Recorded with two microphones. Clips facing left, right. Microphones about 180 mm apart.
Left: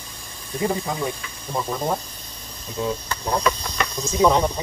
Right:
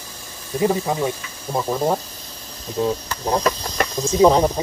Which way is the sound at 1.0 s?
35° right (ahead or behind).